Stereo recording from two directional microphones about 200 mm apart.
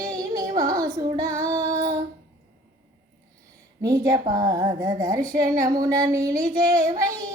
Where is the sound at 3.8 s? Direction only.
15° right (ahead or behind).